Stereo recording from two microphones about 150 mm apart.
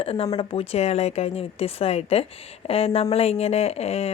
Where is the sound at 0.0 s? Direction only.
40° left (ahead or behind).